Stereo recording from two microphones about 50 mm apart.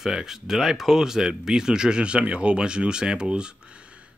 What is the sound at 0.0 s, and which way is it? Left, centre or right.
Speech, centre.